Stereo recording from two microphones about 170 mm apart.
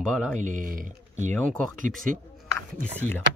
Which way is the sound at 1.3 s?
5° left (ahead or behind).